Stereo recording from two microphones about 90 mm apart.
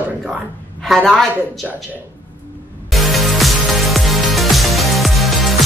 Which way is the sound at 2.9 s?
Centre (ahead or behind).